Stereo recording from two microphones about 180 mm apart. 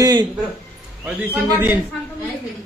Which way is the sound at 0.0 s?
25° right (ahead or behind).